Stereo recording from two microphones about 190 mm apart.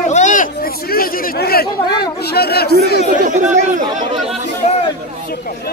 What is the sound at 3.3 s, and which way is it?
Speech, 40° right (ahead or behind).